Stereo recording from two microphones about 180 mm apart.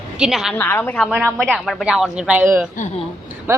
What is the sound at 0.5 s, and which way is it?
A woman's voice, 10° left (ahead or behind).